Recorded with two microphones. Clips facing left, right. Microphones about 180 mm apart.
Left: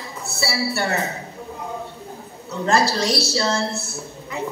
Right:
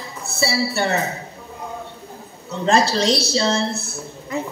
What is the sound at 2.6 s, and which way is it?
Speech, 20° right (ahead or behind).